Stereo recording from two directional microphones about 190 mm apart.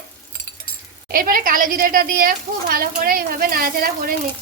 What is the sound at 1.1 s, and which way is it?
Speech, 50° right (ahead or behind).